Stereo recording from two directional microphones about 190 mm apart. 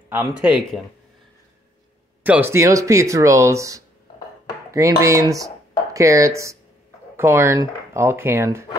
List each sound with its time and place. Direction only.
0.1 s speech: 10° right (ahead or behind)
2.2 s speech: 10° right (ahead or behind)